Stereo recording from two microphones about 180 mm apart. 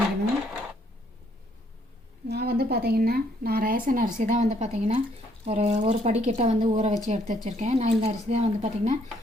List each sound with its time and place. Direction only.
2.2 s a woman's voice: 65° right (ahead or behind); by 9.0 s 40° right (ahead or behind)